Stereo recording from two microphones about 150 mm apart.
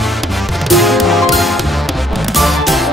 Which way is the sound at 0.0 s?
Centre (ahead or behind).